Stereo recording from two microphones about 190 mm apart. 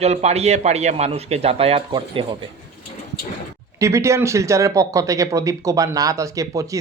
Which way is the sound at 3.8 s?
15° right (ahead or behind).